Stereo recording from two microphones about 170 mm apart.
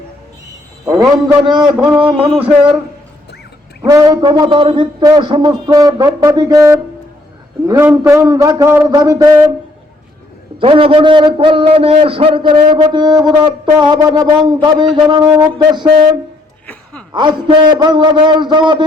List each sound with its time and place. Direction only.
0.9 s a man's voice: 25° right (ahead or behind)
3.8 s a man's voice: 20° right (ahead or behind)
10.6 s a man's voice: 30° right (ahead or behind)
17.2 s a man's voice: 25° right (ahead or behind)